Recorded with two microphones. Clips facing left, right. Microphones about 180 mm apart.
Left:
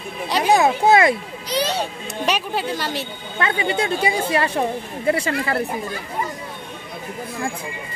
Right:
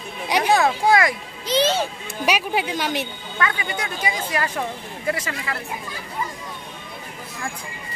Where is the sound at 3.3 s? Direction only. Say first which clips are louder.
Left 4 dB; 25° left (ahead or behind).